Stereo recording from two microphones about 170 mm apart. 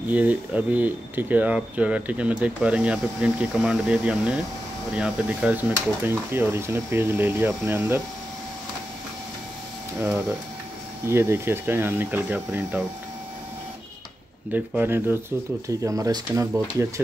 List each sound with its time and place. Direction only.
0.1 s speech: 10° right (ahead or behind)
9.9 s speech: 10° right (ahead or behind)
14.5 s speech: 10° right (ahead or behind)